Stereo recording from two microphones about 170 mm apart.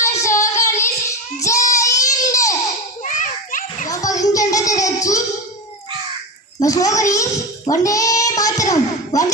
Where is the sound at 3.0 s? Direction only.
50° left (ahead or behind).